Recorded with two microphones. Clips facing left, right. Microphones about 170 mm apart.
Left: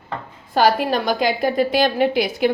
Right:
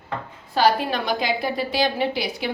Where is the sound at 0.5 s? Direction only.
45° left (ahead or behind).